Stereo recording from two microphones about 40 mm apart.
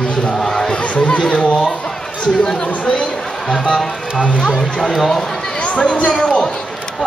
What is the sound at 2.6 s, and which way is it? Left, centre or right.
Speech, left.